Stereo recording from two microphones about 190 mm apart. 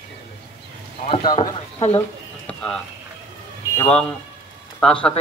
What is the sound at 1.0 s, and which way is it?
Speech, 25° left (ahead or behind).